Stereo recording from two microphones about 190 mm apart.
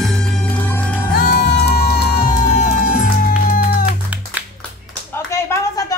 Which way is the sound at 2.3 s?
40° left (ahead or behind).